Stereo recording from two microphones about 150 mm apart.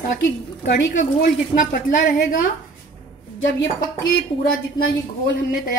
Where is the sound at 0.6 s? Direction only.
65° left (ahead or behind).